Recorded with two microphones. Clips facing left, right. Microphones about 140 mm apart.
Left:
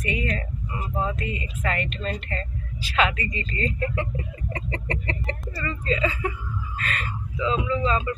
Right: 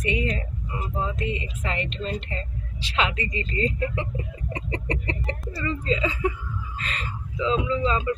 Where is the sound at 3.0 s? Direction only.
25° right (ahead or behind).